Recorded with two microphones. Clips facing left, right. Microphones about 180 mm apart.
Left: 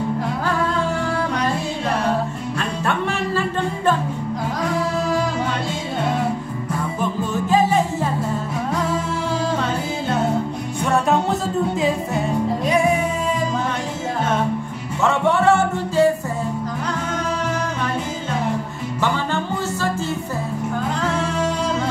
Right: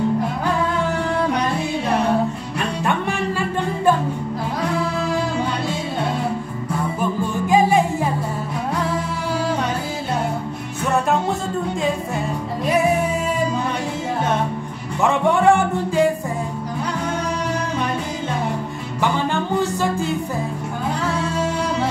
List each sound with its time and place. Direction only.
7.0 s music: 15° right (ahead or behind)
15.0 s music: 15° right (ahead or behind)